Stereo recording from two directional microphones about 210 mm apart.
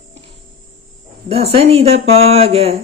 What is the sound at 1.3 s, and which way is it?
Speech, 30° right (ahead or behind).